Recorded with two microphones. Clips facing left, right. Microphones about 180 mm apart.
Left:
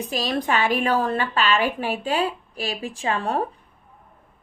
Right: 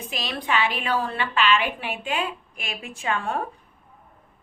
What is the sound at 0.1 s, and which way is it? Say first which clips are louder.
A woman's voice: left 3 dB; 40° left (ahead or behind).